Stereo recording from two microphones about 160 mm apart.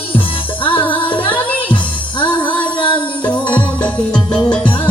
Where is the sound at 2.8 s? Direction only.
30° left (ahead or behind).